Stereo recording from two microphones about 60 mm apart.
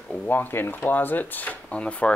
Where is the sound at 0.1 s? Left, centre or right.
Left.